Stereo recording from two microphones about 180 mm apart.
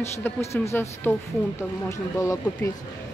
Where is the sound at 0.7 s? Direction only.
10° left (ahead or behind).